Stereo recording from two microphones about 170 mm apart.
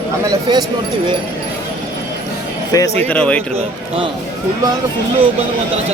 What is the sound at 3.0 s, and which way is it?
Speech, 10° left (ahead or behind).